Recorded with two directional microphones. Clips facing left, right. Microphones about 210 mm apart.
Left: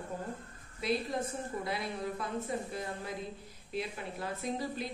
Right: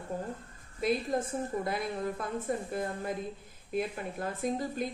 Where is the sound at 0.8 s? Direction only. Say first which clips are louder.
Right 3 dB; 50° right (ahead or behind).